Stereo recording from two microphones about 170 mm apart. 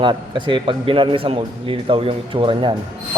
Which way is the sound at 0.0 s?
30° right (ahead or behind).